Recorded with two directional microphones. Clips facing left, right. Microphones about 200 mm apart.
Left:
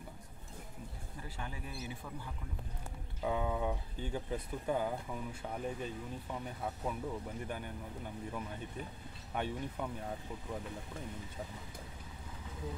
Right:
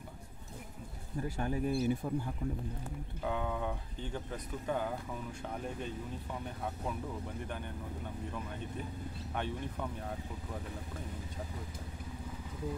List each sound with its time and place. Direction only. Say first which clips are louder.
1.4 s speech: right 13 dB; 45° right (ahead or behind)
3.3 s speech: left 1 dB; 10° left (ahead or behind)
7.4 s speech: even; 10° left (ahead or behind)
9.3 s speech: left 1 dB; 10° left (ahead or behind)